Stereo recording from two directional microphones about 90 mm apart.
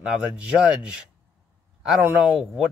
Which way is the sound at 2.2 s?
10° right (ahead or behind).